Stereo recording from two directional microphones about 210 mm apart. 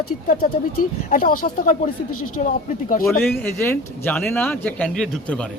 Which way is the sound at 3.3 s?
10° left (ahead or behind).